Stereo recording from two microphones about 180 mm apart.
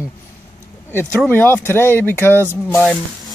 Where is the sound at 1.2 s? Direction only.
10° left (ahead or behind).